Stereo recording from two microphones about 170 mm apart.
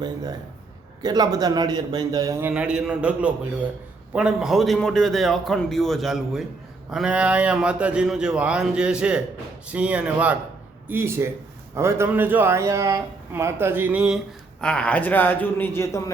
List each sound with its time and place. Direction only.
0.0 s a man's voice: 25° right (ahead or behind)
2.5 s a man's voice: 5° right (ahead or behind)
14.6 s a man's voice: 5° left (ahead or behind)